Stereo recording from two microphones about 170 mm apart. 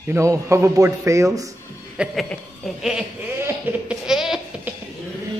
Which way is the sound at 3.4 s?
5° right (ahead or behind).